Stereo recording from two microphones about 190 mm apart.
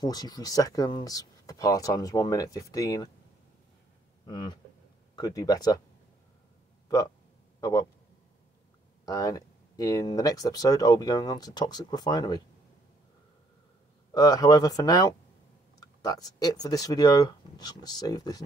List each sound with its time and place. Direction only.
0.0 s speech: 20° left (ahead or behind)
4.3 s speech: 25° left (ahead or behind)
7.6 s a man's voice: 15° left (ahead or behind)
9.0 s speech: 20° left (ahead or behind)
14.1 s speech: 20° left (ahead or behind)